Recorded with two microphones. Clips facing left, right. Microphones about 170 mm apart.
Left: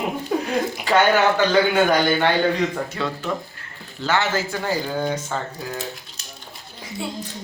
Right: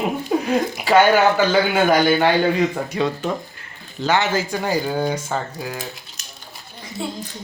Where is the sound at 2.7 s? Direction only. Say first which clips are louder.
Right 4 dB; 15° right (ahead or behind).